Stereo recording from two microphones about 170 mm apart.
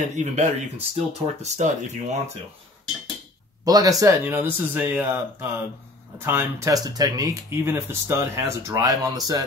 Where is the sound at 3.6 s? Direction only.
20° right (ahead or behind).